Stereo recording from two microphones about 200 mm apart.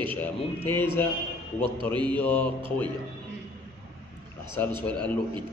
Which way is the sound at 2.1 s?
5° left (ahead or behind).